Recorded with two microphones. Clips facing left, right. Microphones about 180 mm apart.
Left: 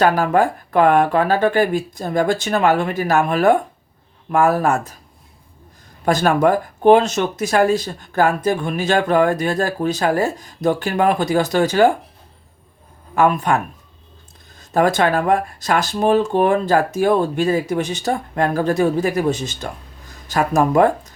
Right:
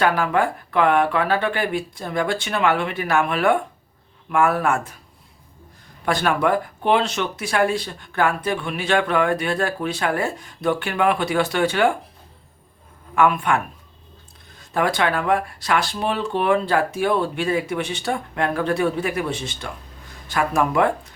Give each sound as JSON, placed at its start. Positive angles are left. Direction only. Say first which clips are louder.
{"t": 0.0, "sound": "speech", "louder": "left 4 dB", "side_deg": 40}
{"t": 6.1, "sound": "speech", "louder": "left 5 dB", "side_deg": 45}
{"t": 13.1, "sound": "speech", "louder": "left 2 dB", "side_deg": 40}
{"t": 14.7, "sound": "speech", "louder": "left 5 dB", "side_deg": 45}